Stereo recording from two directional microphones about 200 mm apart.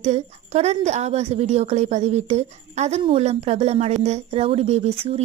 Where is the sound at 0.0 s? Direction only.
35° right (ahead or behind).